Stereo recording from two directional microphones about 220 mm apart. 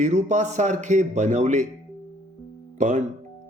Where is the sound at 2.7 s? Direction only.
35° right (ahead or behind).